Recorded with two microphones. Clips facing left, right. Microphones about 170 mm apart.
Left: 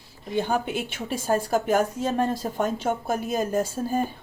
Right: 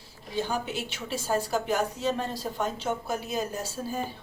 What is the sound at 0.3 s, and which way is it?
A woman's voice, 55° left (ahead or behind).